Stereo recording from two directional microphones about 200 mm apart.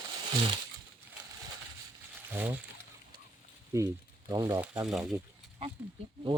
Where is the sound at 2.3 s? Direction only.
10° right (ahead or behind).